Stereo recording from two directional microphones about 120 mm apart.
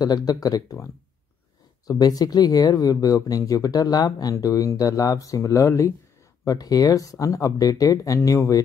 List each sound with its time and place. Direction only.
0.0 s speech: 35° left (ahead or behind)
1.9 s speech: 30° left (ahead or behind)